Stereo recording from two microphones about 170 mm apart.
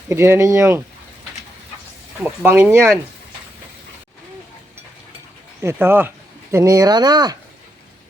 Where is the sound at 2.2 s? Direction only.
10° right (ahead or behind).